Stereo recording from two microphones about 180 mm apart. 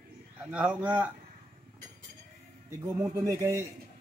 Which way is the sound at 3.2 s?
15° right (ahead or behind).